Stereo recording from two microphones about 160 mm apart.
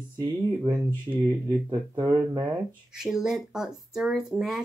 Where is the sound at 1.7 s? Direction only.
25° right (ahead or behind).